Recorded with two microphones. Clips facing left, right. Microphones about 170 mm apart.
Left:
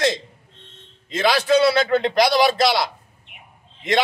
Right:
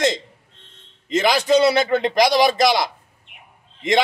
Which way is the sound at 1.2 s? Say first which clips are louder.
Even; 15° right (ahead or behind).